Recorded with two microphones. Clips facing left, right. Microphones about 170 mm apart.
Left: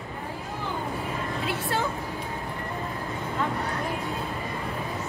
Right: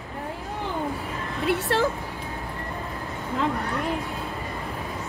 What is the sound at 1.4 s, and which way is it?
Speech, 70° right (ahead or behind).